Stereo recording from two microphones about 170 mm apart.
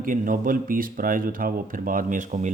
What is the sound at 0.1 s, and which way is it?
Speech, 55° right (ahead or behind).